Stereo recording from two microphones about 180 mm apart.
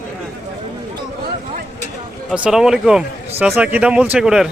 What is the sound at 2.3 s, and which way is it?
Speech, 5° right (ahead or behind).